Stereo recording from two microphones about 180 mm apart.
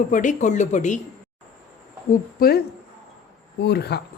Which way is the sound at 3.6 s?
65° left (ahead or behind).